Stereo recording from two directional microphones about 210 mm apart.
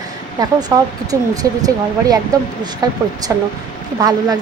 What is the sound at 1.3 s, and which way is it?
Speech, 15° right (ahead or behind).